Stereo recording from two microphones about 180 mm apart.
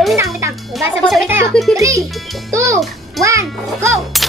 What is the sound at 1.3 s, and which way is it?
A child's voice, 15° right (ahead or behind).